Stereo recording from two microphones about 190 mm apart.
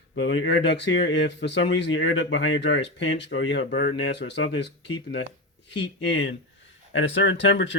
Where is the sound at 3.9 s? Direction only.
70° left (ahead or behind).